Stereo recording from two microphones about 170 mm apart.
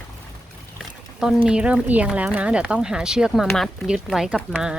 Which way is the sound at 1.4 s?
5° right (ahead or behind).